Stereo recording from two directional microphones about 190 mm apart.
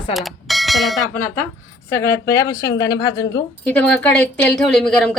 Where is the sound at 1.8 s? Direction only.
15° left (ahead or behind).